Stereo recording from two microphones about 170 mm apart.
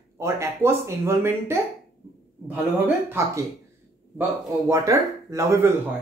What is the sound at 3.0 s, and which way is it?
Speech, 15° right (ahead or behind).